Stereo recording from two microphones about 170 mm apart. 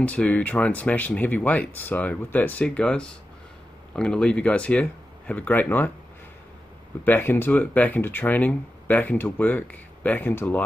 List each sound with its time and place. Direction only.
0.0 s speech: 10° left (ahead or behind)
7.1 s speech: 10° left (ahead or behind)